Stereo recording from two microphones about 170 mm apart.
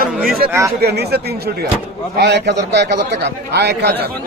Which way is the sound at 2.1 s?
85° right.